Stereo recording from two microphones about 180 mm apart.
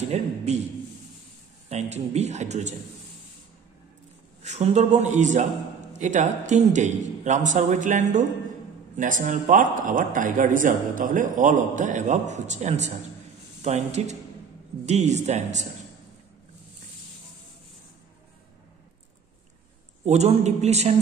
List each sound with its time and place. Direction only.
0.1 s a man's voice: 40° right (ahead or behind)
1.7 s a man's voice: 40° right (ahead or behind)
4.4 s a man's voice: 40° right (ahead or behind)
20.1 s a man's voice: 40° right (ahead or behind)